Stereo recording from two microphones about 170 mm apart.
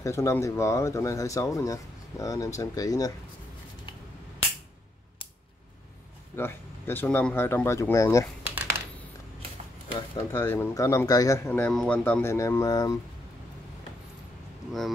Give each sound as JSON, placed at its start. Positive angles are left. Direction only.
{"t": 0.0, "sound": "speech", "side_deg": 15}
{"t": 6.3, "sound": "speech", "side_deg": 15}
{"t": 9.9, "sound": "speech", "side_deg": 15}